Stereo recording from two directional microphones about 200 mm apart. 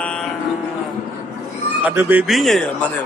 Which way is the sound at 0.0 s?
5° left (ahead or behind).